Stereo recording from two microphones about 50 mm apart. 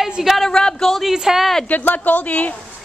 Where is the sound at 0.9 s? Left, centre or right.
Centre.